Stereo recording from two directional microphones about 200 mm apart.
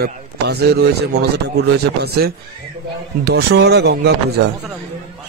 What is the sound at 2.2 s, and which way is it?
Speech, 55° right (ahead or behind).